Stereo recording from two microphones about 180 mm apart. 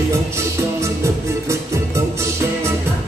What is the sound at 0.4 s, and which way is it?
Music, 15° right (ahead or behind).